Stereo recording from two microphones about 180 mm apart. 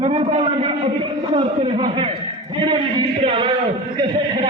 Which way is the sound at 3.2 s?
30° right (ahead or behind).